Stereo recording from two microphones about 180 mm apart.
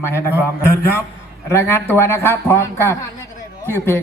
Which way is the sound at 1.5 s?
15° left (ahead or behind).